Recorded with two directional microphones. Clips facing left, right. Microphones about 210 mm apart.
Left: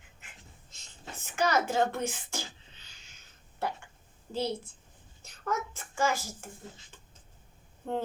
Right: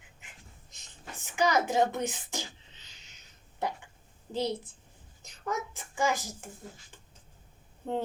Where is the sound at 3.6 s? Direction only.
15° right (ahead or behind).